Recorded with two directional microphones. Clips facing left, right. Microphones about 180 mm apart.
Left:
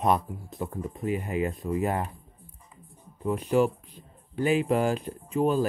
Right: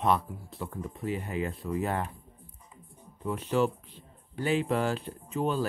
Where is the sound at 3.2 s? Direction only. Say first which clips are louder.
Left 4 dB; 10° left (ahead or behind).